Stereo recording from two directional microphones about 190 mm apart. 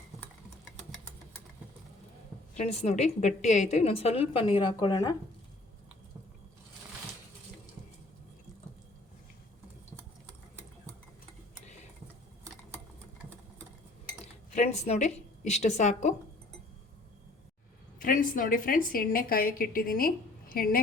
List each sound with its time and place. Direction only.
2.6 s a woman's voice: 35° left (ahead or behind)
14.5 s a woman's voice: 35° left (ahead or behind)
18.0 s speech: 45° left (ahead or behind)